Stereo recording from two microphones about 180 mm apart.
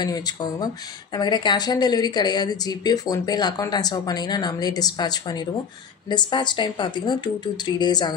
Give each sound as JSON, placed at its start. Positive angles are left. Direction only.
{"t": 0.0, "sound": "speech", "side_deg": 20}